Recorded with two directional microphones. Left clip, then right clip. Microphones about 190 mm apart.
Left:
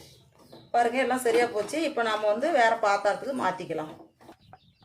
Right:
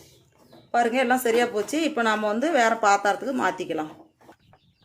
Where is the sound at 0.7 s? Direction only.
50° right (ahead or behind).